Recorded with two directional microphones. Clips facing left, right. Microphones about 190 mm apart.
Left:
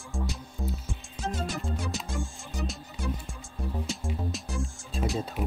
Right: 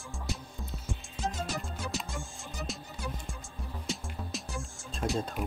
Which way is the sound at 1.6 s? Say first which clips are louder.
Left 3 dB; centre (ahead or behind).